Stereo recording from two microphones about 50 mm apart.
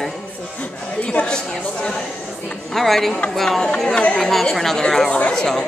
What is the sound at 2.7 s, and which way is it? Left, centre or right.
A woman's voice, centre.